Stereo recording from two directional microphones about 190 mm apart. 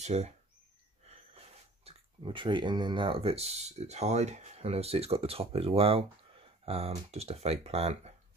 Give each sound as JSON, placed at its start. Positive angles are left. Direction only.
{"t": 0.0, "sound": "speech", "side_deg": -35}